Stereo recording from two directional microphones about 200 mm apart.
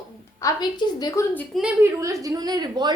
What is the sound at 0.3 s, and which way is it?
A woman's voice, 20° left (ahead or behind).